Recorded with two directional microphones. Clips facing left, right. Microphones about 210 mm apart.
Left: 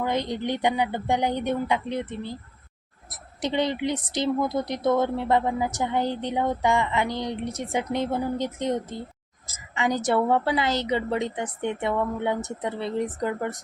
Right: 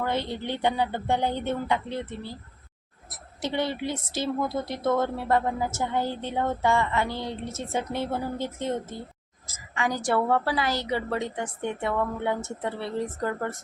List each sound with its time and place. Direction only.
0.0 s a woman's voice: 15° left (ahead or behind)
3.4 s a woman's voice: 15° left (ahead or behind)